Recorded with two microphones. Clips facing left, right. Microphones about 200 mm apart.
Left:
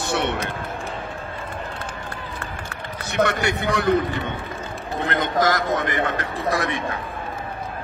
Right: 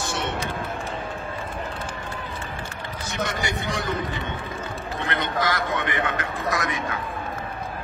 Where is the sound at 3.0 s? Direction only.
65° left (ahead or behind).